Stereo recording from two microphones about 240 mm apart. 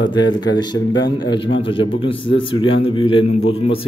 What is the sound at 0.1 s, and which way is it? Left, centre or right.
A man's voice, centre.